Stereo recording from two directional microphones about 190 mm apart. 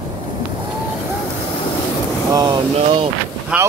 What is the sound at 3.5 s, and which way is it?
Boat, 5° right (ahead or behind).